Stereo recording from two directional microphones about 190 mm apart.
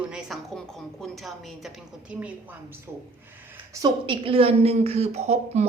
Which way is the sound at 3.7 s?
25° right (ahead or behind).